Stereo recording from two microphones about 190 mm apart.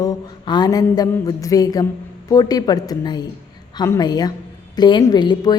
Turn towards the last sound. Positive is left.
turn(degrees=20)  # may be behind; listen again after turning